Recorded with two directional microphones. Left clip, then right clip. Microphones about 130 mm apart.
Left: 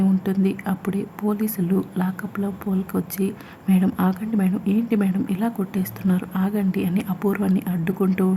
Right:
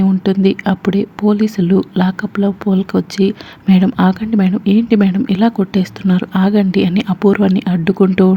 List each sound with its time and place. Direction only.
0.4 s speech: 35° right (ahead or behind)